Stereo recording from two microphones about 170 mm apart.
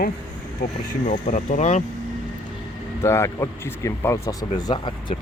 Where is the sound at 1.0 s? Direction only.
45° left (ahead or behind).